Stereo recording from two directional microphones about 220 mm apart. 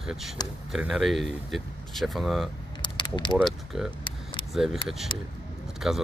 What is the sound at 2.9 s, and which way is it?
Vehicle, 20° left (ahead or behind).